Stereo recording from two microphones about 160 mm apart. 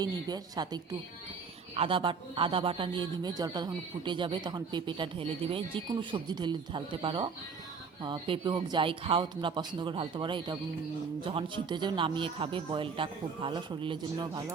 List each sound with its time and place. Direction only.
0.0 s a man's voice: 25° right (ahead or behind)